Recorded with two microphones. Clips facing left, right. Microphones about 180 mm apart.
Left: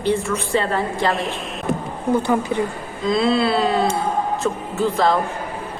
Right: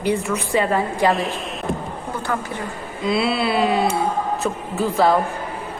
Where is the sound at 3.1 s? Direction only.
10° right (ahead or behind).